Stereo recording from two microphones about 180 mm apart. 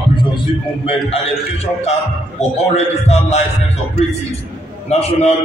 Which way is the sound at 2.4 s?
40° left (ahead or behind).